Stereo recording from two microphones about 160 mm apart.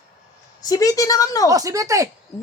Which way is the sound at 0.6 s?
20° left (ahead or behind).